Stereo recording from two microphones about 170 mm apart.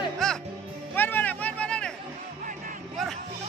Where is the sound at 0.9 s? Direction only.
10° left (ahead or behind).